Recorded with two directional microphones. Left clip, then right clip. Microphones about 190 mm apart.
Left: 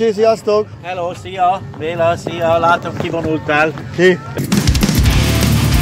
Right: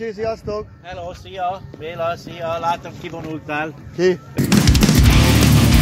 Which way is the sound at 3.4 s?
50° right (ahead or behind).